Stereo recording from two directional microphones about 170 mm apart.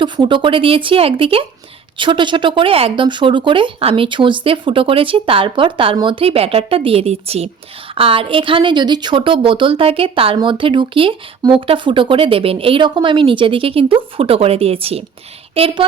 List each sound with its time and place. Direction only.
0.0 s a woman's voice: 30° right (ahead or behind)